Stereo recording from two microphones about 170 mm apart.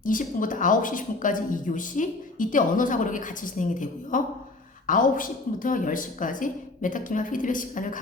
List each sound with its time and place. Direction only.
0.0 s a woman's voice: 50° left (ahead or behind)